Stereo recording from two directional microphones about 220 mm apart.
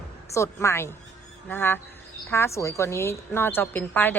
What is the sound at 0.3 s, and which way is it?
A woman's voice, 15° left (ahead or behind).